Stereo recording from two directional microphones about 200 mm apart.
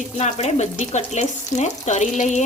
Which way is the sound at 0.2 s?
35° left (ahead or behind).